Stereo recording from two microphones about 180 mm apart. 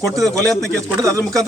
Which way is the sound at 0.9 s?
15° right (ahead or behind).